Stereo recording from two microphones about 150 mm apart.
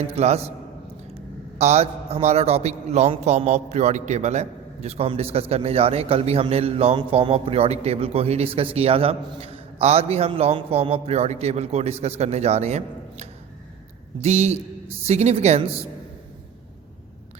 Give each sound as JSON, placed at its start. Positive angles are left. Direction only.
{"t": 0.2, "sound": "a man's voice", "side_deg": -45}
{"t": 1.5, "sound": "a man's voice", "side_deg": -45}